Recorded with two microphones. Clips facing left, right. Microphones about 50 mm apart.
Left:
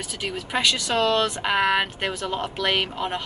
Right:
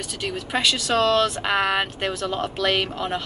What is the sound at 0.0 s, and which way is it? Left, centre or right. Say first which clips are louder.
Speech: right 1 dB; centre.